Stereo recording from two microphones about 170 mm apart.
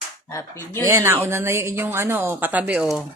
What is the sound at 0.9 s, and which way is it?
Speech, 15° right (ahead or behind).